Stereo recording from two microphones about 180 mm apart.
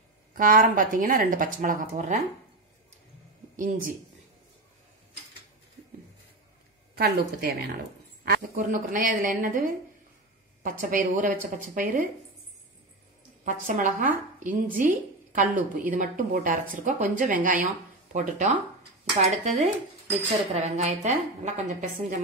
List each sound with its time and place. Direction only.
0.3 s a woman's voice: 50° right (ahead or behind)
3.5 s a woman's voice: 50° right (ahead or behind)
7.0 s a woman's voice: 60° right (ahead or behind)
13.7 s a woman's voice: 45° right (ahead or behind)